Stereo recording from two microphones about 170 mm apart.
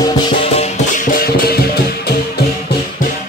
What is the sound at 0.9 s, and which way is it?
Music, 55° left (ahead or behind).